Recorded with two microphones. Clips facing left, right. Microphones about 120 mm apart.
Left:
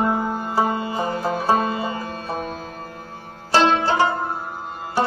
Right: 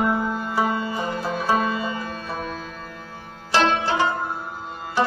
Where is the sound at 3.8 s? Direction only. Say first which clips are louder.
Left 3 dB; 40° left (ahead or behind).